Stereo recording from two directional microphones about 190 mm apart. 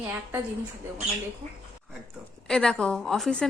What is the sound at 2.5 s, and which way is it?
Speech, 5° left (ahead or behind).